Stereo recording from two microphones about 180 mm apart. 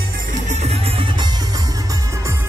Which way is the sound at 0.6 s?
30° right (ahead or behind).